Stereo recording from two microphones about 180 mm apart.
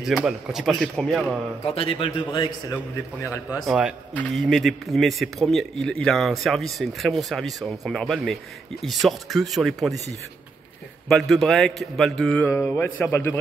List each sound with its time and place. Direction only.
0.0 s speech: 5° right (ahead or behind)
1.8 s a man's voice: 30° left (ahead or behind)
2.7 s a man's voice: 15° left (ahead or behind)
3.6 s speech: 5° right (ahead or behind)
11.1 s a man's voice: centre (ahead or behind)